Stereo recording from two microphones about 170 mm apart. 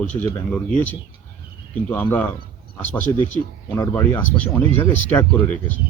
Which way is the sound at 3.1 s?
20° left (ahead or behind).